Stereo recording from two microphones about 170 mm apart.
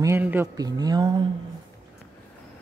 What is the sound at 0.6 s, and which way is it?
Speech, 25° right (ahead or behind).